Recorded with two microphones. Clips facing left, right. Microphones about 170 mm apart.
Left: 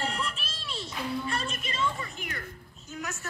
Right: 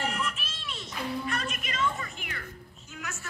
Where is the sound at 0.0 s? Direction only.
30° left (ahead or behind).